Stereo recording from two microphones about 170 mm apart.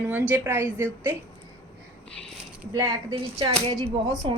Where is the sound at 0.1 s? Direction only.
10° right (ahead or behind).